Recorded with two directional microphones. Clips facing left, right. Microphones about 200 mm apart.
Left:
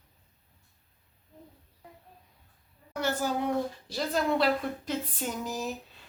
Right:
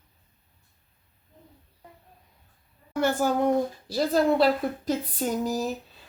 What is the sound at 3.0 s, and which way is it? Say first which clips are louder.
Speech: right 6 dB; 55° right (ahead or behind).